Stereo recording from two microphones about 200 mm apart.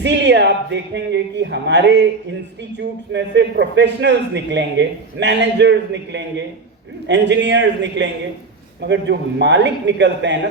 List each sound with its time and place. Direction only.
0.0 s a man's voice: 60° right (ahead or behind)